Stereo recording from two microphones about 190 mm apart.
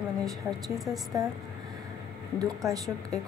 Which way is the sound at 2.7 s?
20° right (ahead or behind).